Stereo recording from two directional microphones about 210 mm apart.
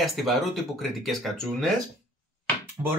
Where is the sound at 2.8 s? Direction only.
15° right (ahead or behind).